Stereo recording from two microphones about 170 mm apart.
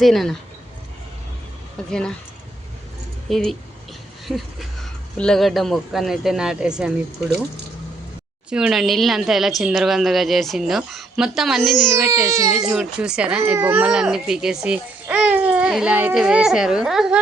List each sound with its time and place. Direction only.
0.0 s speech: centre (ahead or behind)
1.9 s speech: 5° left (ahead or behind)
3.2 s speech: centre (ahead or behind)
5.1 s speech: 5° left (ahead or behind)
8.4 s speech: 5° right (ahead or behind)
12.2 s speech: 20° right (ahead or behind)
12.7 s speech: 5° right (ahead or behind)